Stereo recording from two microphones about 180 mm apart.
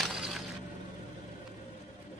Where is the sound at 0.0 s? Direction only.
Centre (ahead or behind).